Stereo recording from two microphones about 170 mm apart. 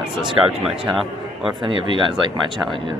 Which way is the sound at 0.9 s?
Centre (ahead or behind).